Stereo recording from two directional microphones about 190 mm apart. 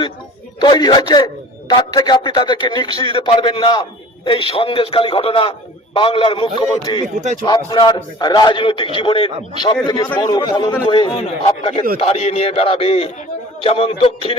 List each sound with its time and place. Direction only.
0.6 s a man's voice: 25° left (ahead or behind)